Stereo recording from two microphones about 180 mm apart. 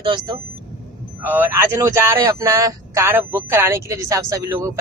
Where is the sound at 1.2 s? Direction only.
10° right (ahead or behind).